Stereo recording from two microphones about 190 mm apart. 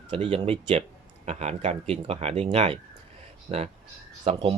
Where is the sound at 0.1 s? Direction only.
30° right (ahead or behind).